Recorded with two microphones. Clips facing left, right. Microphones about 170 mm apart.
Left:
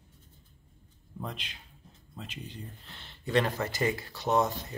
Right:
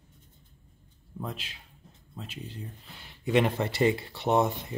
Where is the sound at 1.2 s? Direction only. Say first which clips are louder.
Right 2 dB; 5° right (ahead or behind); by 4.7 s 25° right (ahead or behind).